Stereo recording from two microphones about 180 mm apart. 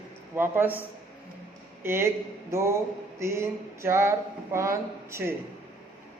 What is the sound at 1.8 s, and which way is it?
Speech, 15° right (ahead or behind).